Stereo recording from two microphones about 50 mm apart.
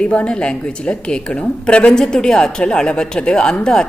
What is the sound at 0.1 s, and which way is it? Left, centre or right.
A woman's voice, left.